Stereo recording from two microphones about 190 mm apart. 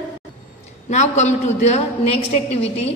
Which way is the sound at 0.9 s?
40° left (ahead or behind).